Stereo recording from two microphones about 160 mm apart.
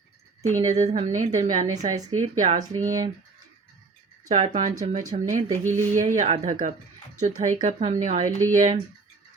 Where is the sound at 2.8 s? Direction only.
25° right (ahead or behind).